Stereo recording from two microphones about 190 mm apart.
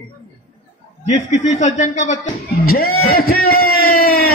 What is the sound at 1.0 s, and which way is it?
A man's voice, 40° left (ahead or behind).